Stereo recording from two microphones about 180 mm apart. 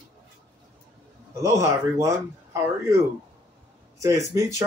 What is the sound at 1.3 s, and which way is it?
Speech, 15° right (ahead or behind).